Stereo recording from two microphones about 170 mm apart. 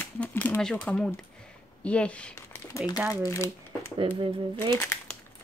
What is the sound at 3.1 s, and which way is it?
Shuffling cards, 20° left (ahead or behind).